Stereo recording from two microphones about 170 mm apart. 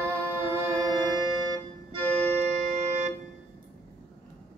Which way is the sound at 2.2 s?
40° right (ahead or behind).